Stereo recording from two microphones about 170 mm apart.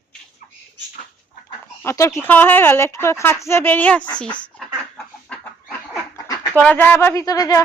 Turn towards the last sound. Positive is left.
turn(degrees=20)  # may be behind; listen again after turning